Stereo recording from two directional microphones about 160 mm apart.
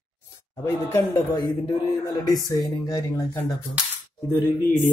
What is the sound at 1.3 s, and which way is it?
Speech, 25° left (ahead or behind).